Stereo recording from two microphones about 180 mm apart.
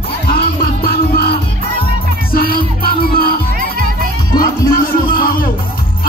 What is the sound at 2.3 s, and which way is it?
Music, 55° left (ahead or behind).